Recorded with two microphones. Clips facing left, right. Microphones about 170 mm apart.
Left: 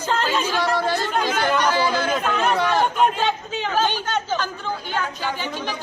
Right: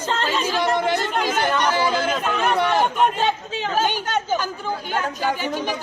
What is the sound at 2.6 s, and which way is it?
Speech, 20° right (ahead or behind).